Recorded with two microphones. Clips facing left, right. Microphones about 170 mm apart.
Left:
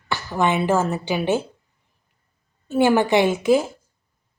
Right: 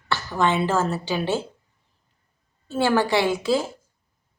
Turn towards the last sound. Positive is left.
turn(degrees=20)  # may be behind; listen again after turning